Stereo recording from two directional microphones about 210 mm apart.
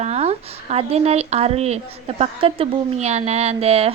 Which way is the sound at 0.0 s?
30° right (ahead or behind).